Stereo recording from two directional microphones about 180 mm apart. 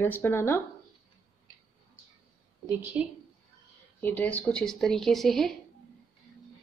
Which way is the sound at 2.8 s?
5° right (ahead or behind).